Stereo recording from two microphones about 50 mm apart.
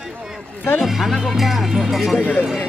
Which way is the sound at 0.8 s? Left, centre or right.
Centre.